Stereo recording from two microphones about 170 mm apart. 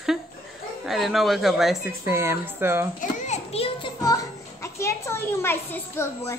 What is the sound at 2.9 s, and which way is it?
Children playing, 45° left (ahead or behind).